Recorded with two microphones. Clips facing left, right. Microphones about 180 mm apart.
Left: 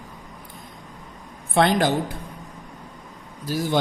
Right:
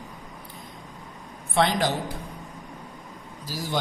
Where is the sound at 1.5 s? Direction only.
50° left (ahead or behind).